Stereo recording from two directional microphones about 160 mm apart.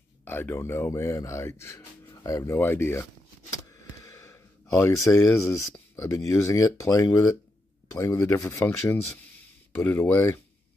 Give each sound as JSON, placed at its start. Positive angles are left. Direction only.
{"t": 0.2, "sound": "a man's voice", "side_deg": 15}
{"t": 3.5, "sound": "a sound", "side_deg": 20}
{"t": 5.5, "sound": "a man's voice", "side_deg": 20}